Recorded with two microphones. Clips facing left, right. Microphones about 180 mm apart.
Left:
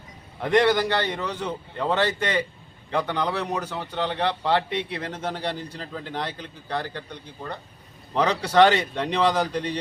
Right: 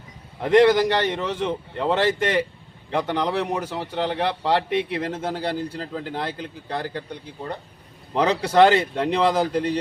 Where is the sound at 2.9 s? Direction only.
15° right (ahead or behind).